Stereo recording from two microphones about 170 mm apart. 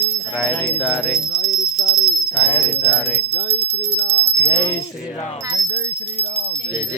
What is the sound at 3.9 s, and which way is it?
Speech, 35° right (ahead or behind).